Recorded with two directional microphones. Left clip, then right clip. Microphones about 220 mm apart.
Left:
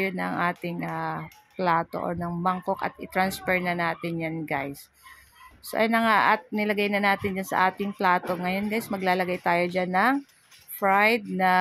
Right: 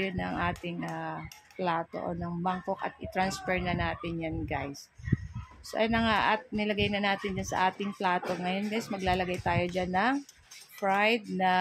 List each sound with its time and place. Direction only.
0.0 s speech: 25° left (ahead or behind)
5.7 s speech: 25° left (ahead or behind)